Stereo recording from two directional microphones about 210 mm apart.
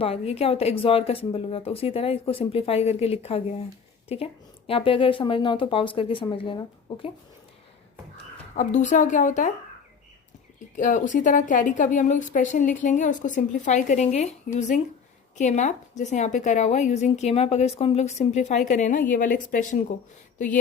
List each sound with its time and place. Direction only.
0.0 s speech: 30° left (ahead or behind)
8.5 s a woman's voice: 35° left (ahead or behind)
10.8 s a woman's voice: 35° left (ahead or behind)